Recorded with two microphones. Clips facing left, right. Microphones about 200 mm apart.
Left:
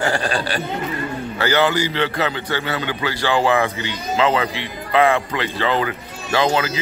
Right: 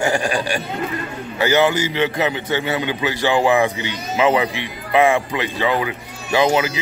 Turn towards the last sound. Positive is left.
turn(degrees=-15)  # may be behind; listen again after turning